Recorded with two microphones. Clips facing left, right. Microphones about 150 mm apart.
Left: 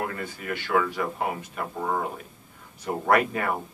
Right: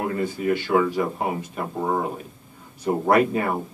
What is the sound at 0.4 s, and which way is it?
Speech, 25° right (ahead or behind).